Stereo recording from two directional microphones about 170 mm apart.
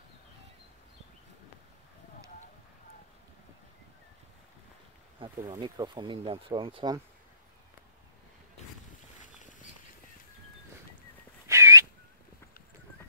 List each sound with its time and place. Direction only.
5.2 s speech: 25° right (ahead or behind)
9.2 s a sound: 50° left (ahead or behind)
11.4 s whistling: 15° right (ahead or behind)